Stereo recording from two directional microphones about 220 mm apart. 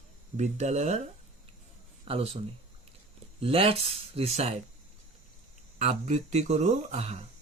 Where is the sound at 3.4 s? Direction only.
25° right (ahead or behind).